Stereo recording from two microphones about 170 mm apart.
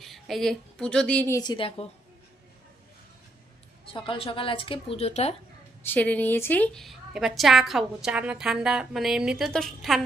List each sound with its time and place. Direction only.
0.0 s a woman's voice: centre (ahead or behind)
1.4 s speech: 30° left (ahead or behind)
3.9 s speech: 30° left (ahead or behind)
5.8 s a woman's voice: 10° left (ahead or behind)